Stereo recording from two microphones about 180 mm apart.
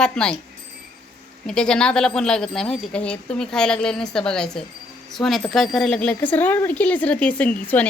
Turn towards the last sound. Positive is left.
turn(degrees=10)  # may be behind; listen again after turning